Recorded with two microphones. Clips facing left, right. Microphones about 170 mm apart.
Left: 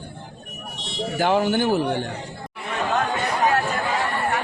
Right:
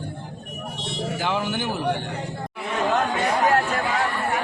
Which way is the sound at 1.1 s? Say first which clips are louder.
Left 8 dB; 50° left (ahead or behind).